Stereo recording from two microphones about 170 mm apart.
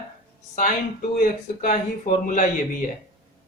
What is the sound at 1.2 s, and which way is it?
Speech, 50° left (ahead or behind).